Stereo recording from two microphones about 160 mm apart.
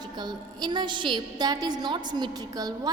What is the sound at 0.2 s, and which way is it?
A woman's voice, 25° right (ahead or behind).